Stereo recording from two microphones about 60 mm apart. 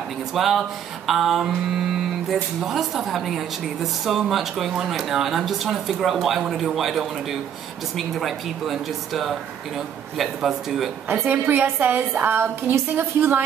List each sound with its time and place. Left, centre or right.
0.3 s speech: centre
11.1 s a woman's voice: right